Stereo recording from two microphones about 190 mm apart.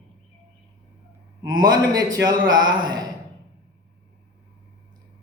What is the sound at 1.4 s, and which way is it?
A man's voice, 20° right (ahead or behind).